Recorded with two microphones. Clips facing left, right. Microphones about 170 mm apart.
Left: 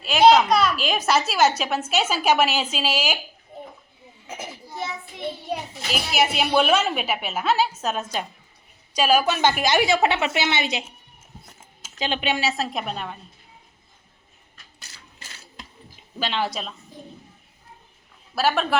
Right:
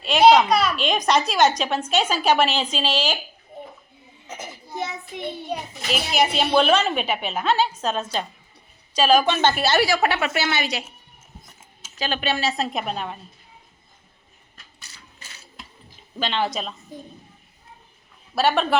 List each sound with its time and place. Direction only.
0.0 s a woman's voice: centre (ahead or behind)
4.3 s a child's voice: 10° left (ahead or behind)
11.9 s a woman's voice: 20° left (ahead or behind); by 13.1 s centre (ahead or behind)
16.1 s a woman's voice: 5° left (ahead or behind)
18.3 s a woman's voice: centre (ahead or behind)